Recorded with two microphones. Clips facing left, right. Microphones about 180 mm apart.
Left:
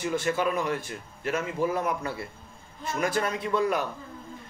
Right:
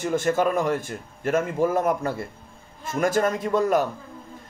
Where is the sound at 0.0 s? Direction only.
45° right (ahead or behind).